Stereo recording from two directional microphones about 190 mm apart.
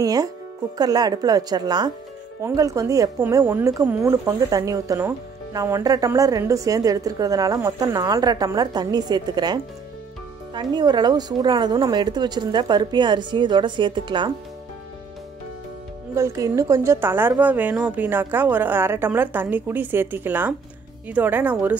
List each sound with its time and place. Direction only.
0.0 s a woman's voice: 20° right (ahead or behind)
16.2 s a woman's voice: 15° right (ahead or behind)